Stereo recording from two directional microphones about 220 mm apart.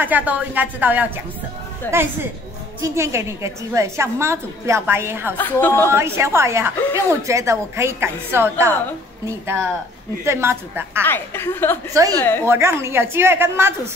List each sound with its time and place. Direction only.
0.0 s a woman's voice: 5° right (ahead or behind)
1.8 s a woman's voice: 10° left (ahead or behind)
2.8 s a woman's voice: 10° right (ahead or behind)
5.4 s a woman's voice: 10° left (ahead or behind)
5.9 s a woman's voice: 10° right (ahead or behind)
10.2 s a woman's voice: 10° right (ahead or behind)
11.0 s a woman's voice: 10° left (ahead or behind)
11.9 s a woman's voice: 15° right (ahead or behind)
12.2 s a woman's voice: 10° left (ahead or behind)
12.4 s a woman's voice: 10° right (ahead or behind)